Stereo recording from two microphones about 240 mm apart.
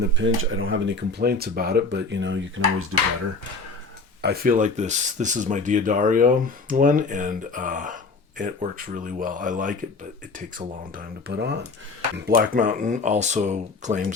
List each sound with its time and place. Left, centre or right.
0.0 s speech: right
4.2 s speech: right
9.0 s speech: right
10.9 s speech: right